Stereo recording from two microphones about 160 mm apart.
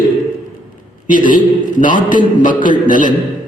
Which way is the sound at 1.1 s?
55° left (ahead or behind).